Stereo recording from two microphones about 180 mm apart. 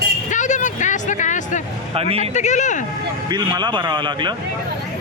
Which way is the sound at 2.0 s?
35° right (ahead or behind).